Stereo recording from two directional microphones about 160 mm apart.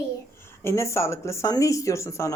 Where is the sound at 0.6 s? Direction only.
15° left (ahead or behind).